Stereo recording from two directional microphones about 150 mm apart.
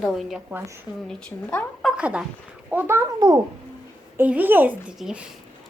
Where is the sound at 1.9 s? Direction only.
5° right (ahead or behind).